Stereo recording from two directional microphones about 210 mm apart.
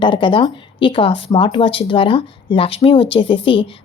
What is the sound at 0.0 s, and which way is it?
A woman's voice, 25° left (ahead or behind).